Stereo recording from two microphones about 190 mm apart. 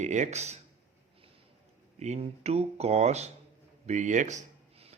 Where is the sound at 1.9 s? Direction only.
35° right (ahead or behind).